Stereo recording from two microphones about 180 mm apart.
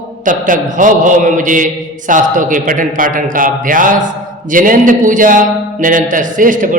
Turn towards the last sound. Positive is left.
turn(degrees=-50)  # may be behind; listen again after turning